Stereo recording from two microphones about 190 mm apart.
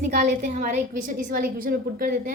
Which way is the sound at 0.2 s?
40° right (ahead or behind).